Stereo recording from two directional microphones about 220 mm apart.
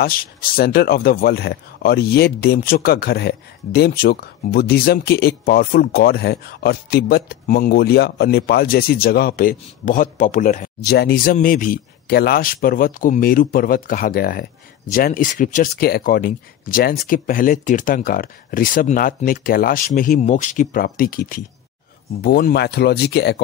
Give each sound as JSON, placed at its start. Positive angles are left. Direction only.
{"t": 0.0, "sound": "speech", "side_deg": 40}